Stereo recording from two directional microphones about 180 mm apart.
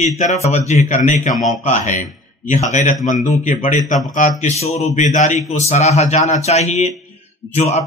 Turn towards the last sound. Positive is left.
turn(degrees=35)  # may be behind; listen again after turning